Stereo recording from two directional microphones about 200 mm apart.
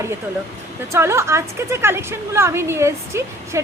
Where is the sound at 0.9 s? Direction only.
15° right (ahead or behind).